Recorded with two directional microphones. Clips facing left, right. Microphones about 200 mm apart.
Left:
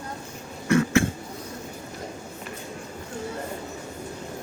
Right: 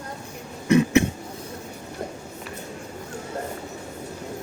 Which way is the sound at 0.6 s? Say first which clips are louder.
Right 3 dB; 20° right (ahead or behind).